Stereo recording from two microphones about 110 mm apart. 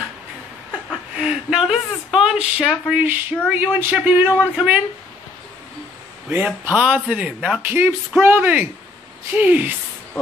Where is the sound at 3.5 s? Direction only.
15° right (ahead or behind).